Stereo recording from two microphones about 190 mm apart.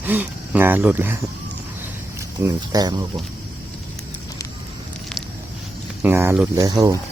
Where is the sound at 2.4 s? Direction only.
15° right (ahead or behind).